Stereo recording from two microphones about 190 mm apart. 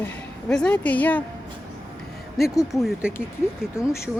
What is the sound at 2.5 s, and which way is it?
Speech, 20° left (ahead or behind).